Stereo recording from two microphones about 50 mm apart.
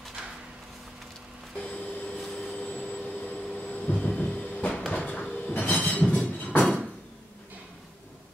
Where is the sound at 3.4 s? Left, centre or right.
Centre.